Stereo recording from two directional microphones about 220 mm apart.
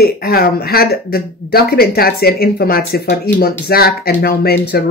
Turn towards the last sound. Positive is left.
turn(degrees=45)  # may be behind; listen again after turning